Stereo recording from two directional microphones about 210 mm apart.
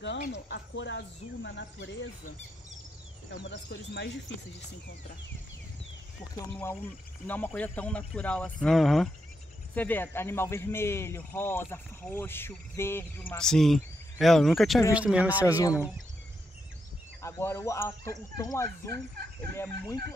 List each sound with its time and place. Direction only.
0.3 s speech: 55° left (ahead or behind)
3.3 s speech: 60° left (ahead or behind)
6.3 s speech: 10° left (ahead or behind); by 15.4 s 5° right (ahead or behind)
17.2 s speech: 10° left (ahead or behind)